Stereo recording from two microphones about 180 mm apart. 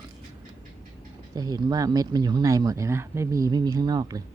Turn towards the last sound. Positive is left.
turn(degrees=-20)  # may be behind; listen again after turning